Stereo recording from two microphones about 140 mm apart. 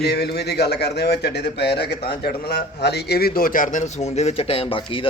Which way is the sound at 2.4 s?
90° left.